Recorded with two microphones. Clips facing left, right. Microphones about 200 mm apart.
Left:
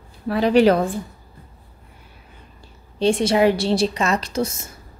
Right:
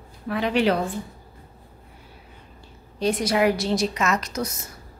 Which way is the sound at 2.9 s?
30° left (ahead or behind).